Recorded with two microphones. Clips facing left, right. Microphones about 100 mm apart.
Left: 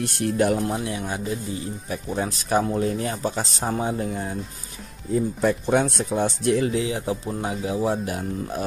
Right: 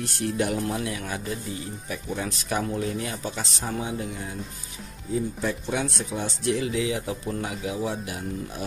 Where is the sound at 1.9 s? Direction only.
35° left (ahead or behind).